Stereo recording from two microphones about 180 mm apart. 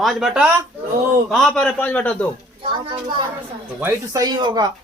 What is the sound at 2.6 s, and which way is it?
Speech, 30° right (ahead or behind).